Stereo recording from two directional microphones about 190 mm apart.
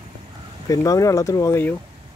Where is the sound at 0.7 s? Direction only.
15° left (ahead or behind).